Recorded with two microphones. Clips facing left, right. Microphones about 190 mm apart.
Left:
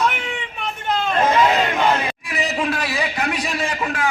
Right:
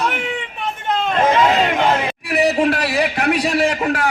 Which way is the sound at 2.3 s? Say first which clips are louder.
Right 9 dB; 65° right (ahead or behind).